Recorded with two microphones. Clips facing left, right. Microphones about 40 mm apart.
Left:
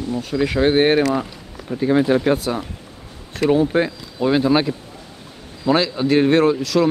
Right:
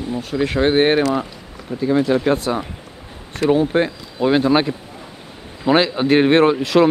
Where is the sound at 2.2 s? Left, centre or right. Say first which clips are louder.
Right 1 dB; centre.